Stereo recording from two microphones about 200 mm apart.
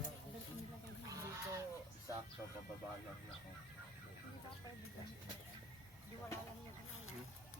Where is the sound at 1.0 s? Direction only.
15° right (ahead or behind).